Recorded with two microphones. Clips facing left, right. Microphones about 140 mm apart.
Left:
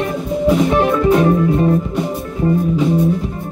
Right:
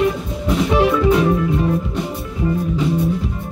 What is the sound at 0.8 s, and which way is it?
Music, 45° left (ahead or behind).